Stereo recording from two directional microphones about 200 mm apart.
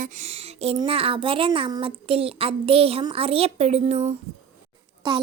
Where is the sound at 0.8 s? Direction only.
30° right (ahead or behind).